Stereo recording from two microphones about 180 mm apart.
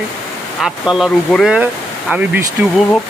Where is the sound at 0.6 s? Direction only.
Centre (ahead or behind).